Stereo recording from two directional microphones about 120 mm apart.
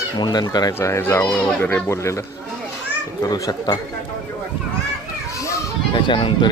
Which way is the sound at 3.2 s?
30° left (ahead or behind).